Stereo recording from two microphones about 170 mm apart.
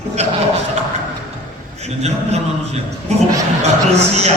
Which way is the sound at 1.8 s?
40° right (ahead or behind).